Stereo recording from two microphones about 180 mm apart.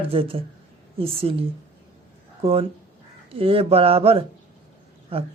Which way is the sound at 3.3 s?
30° right (ahead or behind).